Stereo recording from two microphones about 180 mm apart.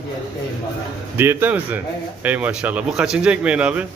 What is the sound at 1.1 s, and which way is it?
A man's voice, 10° right (ahead or behind).